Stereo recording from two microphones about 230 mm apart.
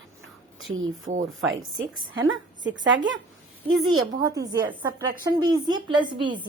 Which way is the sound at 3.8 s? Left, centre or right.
Right.